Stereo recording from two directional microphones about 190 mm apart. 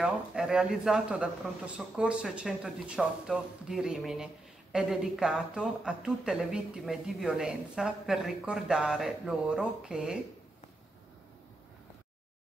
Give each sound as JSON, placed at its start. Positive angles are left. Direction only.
{"t": 0.0, "sound": "speech", "side_deg": -5}